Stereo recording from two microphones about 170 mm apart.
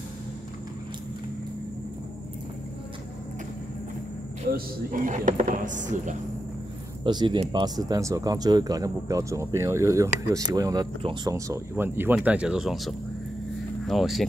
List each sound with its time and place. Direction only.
4.5 s speech: 55° right (ahead or behind)
7.1 s speech: 25° right (ahead or behind); by 14.2 s centre (ahead or behind)